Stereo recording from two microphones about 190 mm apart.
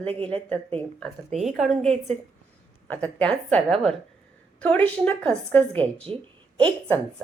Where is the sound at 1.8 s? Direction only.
35° right (ahead or behind).